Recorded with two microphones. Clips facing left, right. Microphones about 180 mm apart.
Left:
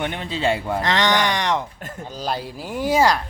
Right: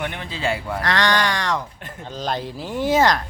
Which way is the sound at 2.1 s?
10° left (ahead or behind).